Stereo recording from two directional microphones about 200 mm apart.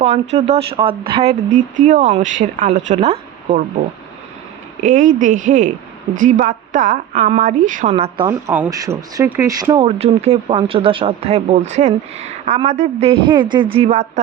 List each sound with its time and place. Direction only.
0.0 s speech: 35° right (ahead or behind)
1.8 s speech: 40° right (ahead or behind)
4.8 s speech: 40° right (ahead or behind)
8.3 s speech: 10° right (ahead or behind); by 14.1 s 35° right (ahead or behind)